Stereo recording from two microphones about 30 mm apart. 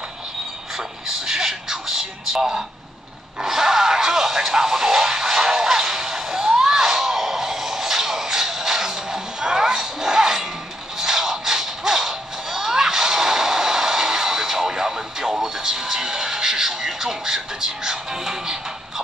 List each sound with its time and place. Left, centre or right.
0.7 s speech: centre
3.4 s a sound: centre
11.0 s music: centre